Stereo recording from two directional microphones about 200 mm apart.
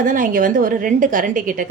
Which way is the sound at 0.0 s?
40° right (ahead or behind).